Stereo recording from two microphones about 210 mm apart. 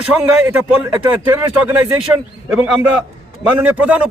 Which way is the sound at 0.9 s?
10° right (ahead or behind).